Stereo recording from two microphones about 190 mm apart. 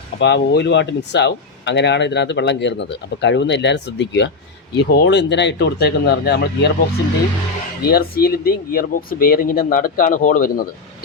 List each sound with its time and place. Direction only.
0.2 s speech: 65° left (ahead or behind)
7.9 s speech: 55° left (ahead or behind)